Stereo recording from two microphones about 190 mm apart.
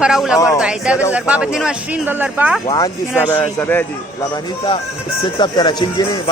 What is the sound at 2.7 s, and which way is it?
A man's voice, 20° left (ahead or behind).